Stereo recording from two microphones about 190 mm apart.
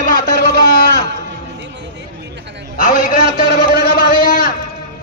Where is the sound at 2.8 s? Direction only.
45° left (ahead or behind).